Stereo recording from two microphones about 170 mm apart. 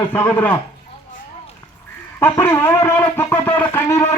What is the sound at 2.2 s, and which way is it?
Speech, 15° left (ahead or behind).